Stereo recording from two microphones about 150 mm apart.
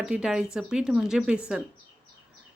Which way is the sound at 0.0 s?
5° right (ahead or behind).